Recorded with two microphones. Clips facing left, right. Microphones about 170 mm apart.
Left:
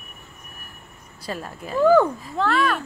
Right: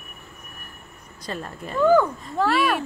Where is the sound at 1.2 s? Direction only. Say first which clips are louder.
Left 1 dB; 5° left (ahead or behind).